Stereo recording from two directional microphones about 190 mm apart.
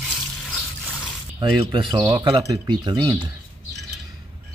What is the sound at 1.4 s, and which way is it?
Speech, 25° right (ahead or behind).